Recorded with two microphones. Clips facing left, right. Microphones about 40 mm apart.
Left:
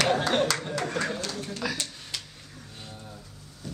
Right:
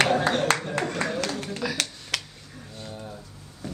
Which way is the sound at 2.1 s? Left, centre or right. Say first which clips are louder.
Right 8 dB; right.